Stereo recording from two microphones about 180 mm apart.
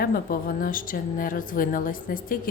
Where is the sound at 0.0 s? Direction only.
55° left (ahead or behind).